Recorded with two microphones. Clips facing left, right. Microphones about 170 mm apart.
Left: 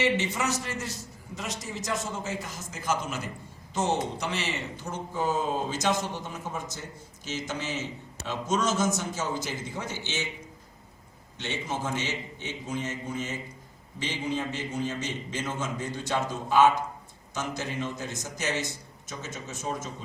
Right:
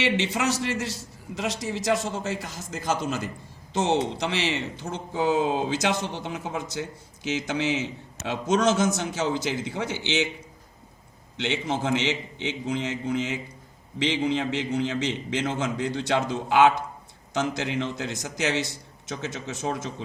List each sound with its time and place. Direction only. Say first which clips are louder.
0.0 s a man's voice: right 2 dB; 75° right (ahead or behind)
8.3 s a man's voice: right 5 dB; 70° right (ahead or behind)
9.0 s a man's voice: right 5 dB; 80° right
11.3 s a man's voice: right 5 dB; 75° right (ahead or behind)
15.0 s a man's voice: right 6 dB; 90° right